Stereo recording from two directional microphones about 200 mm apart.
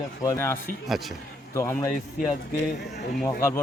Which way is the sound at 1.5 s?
15° left (ahead or behind).